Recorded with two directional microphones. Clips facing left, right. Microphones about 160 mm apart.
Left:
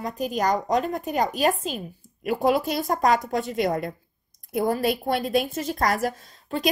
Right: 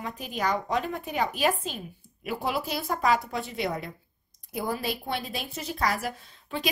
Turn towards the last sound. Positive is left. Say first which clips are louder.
# left 5 dB
turn(degrees=40)  # may be behind; listen again after turning